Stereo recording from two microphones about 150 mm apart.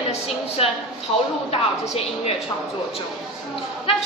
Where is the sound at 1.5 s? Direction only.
40° left (ahead or behind).